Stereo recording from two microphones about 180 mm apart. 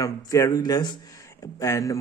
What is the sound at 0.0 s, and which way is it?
Speech, 20° left (ahead or behind).